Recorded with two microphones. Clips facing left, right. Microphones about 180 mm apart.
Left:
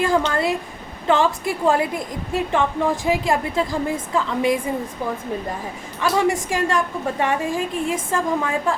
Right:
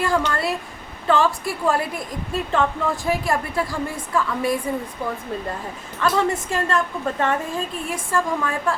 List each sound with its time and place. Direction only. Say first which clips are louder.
0.0 s a woman's voice: left 2 dB; 20° left (ahead or behind)
6.0 s a woman's voice: left 1 dB; 15° left (ahead or behind)